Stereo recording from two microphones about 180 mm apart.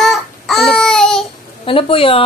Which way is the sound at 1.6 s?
30° left (ahead or behind).